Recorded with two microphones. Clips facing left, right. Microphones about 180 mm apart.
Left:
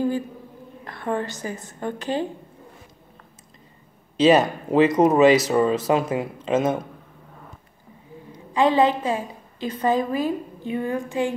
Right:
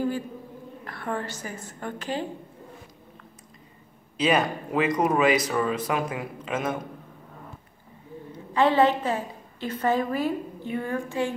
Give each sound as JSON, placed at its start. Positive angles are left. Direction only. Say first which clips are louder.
{"t": 0.8, "sound": "a woman's voice", "louder": "left 5 dB", "side_deg": 20}
{"t": 4.2, "sound": "a woman's voice", "louder": "left 7 dB", "side_deg": 25}
{"t": 8.3, "sound": "a woman's voice", "louder": "left 2 dB", "side_deg": 15}